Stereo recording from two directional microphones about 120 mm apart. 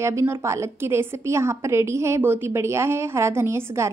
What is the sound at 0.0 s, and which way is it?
A woman's voice, 20° right (ahead or behind).